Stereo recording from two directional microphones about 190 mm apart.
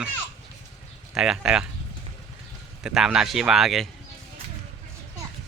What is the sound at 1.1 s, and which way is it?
Speech, 5° right (ahead or behind).